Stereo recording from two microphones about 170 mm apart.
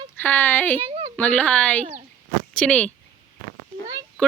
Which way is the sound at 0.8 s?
35° right (ahead or behind).